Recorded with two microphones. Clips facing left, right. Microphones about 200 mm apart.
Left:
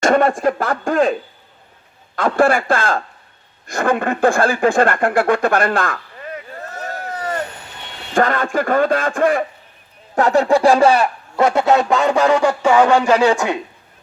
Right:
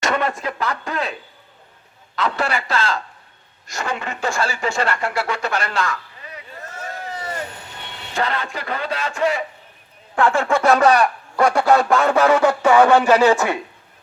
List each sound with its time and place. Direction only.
0.0 s speech: 50° left (ahead or behind)
6.6 s a sound: 40° left (ahead or behind)
8.1 s speech: 50° left (ahead or behind)
10.2 s speech: 40° left (ahead or behind); by 13.6 s 15° left (ahead or behind)